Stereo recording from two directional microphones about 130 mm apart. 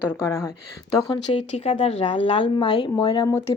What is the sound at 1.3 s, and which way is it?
Speech, 50° left (ahead or behind).